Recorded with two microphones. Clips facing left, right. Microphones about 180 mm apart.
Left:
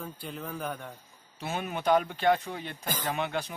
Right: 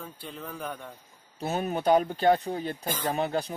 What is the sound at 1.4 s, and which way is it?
Speech, 40° right (ahead or behind).